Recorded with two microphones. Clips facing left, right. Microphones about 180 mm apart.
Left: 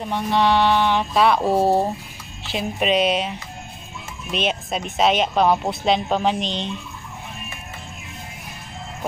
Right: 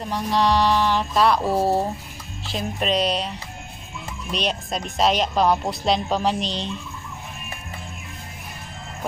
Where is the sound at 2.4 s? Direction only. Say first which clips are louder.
Left 3 dB; 5° left (ahead or behind).